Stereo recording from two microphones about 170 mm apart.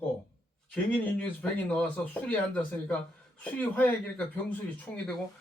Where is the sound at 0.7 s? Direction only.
10° left (ahead or behind).